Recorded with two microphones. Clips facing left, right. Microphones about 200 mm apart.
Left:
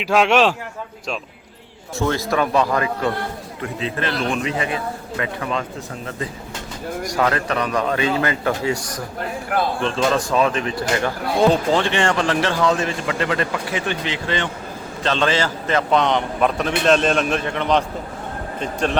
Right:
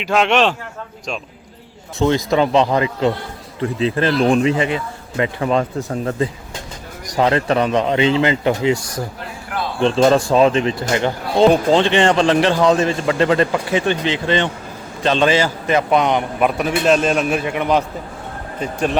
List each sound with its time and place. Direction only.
0.0 s a man's voice: 5° left (ahead or behind)
2.0 s a man's voice: 15° right (ahead or behind); by 5.6 s 35° right (ahead or behind)
7.1 s speech: 25° right (ahead or behind)
9.8 s a man's voice: 35° right (ahead or behind); by 17.8 s 10° right (ahead or behind)